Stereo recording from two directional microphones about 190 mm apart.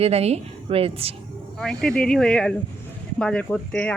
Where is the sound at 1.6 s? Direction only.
5° left (ahead or behind).